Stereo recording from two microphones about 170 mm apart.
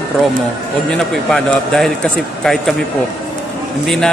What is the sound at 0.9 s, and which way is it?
Speech, 5° left (ahead or behind).